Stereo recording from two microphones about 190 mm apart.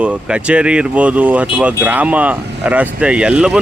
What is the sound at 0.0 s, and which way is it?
Speech, 5° right (ahead or behind).